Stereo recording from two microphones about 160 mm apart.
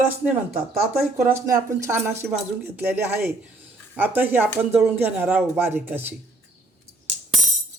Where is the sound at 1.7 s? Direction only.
15° right (ahead or behind).